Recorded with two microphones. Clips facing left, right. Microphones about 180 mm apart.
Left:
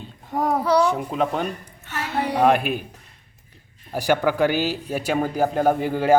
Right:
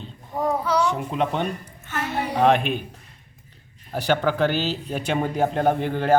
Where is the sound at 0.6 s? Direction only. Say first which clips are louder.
Left 6 dB; 35° left (ahead or behind).